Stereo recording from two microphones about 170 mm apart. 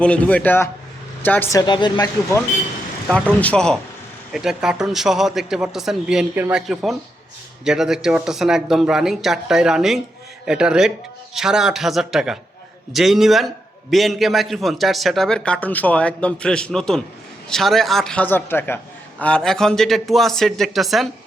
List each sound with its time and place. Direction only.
0.0 s a man's voice: 5° left (ahead or behind)
1.6 s a woman's voice: 25° left (ahead or behind)
3.1 s a man's voice: 5° left (ahead or behind)